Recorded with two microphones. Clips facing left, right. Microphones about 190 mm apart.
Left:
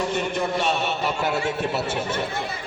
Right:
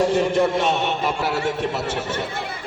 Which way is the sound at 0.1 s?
30° right (ahead or behind).